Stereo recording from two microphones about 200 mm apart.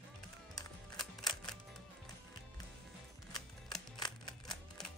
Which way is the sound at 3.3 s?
20° left (ahead or behind).